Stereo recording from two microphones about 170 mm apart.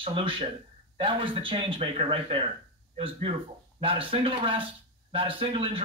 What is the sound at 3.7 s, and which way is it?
Speech, 30° right (ahead or behind).